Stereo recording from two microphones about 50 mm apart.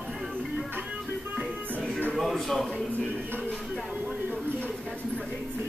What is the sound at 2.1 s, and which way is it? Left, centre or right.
Speech, centre.